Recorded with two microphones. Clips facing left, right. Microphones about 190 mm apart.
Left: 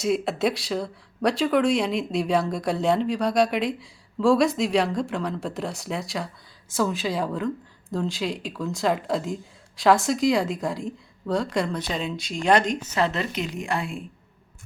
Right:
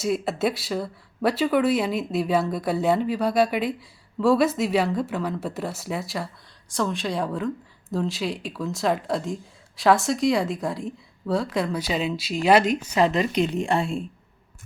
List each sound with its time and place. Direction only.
0.0 s a woman's voice: centre (ahead or behind)
13.5 s speech: 30° right (ahead or behind)